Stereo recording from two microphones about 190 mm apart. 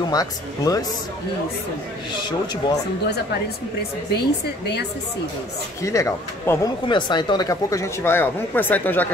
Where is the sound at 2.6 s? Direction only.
25° left (ahead or behind).